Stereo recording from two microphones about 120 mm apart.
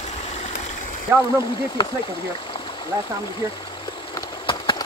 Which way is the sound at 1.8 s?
45° left (ahead or behind).